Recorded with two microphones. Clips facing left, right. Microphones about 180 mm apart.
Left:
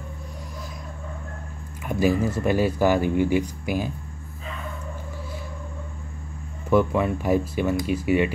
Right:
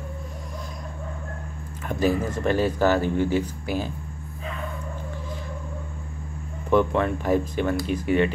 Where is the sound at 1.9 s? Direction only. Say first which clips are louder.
Left 2 dB; 10° left (ahead or behind).